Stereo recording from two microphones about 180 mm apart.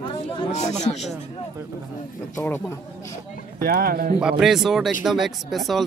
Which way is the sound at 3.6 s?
55° right (ahead or behind).